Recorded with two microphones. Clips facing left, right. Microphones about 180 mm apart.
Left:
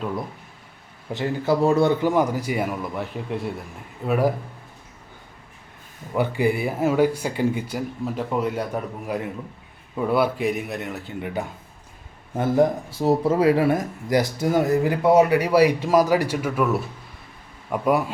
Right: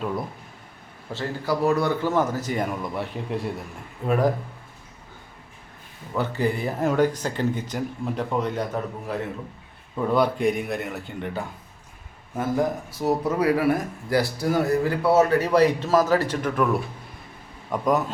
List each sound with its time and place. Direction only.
1.1 s speech: 20° left (ahead or behind)
6.1 s a man's voice: 10° left (ahead or behind)
12.4 s speech: 25° left (ahead or behind); by 18.1 s 10° left (ahead or behind)